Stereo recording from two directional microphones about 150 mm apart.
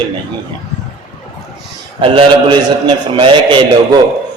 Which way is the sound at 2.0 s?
35° right (ahead or behind).